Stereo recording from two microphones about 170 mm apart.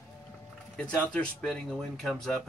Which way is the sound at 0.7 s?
5° left (ahead or behind).